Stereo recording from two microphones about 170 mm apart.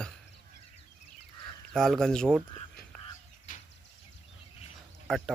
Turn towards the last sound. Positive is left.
turn(degrees=0)  # may be behind; listen again after turning